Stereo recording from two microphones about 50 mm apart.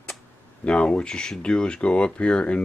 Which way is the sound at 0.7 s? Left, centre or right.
Left.